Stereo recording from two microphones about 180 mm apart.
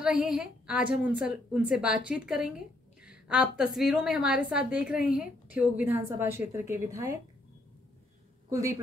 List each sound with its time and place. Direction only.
0.0 s a woman's voice: 5° right (ahead or behind)
8.5 s a woman's voice: 15° right (ahead or behind)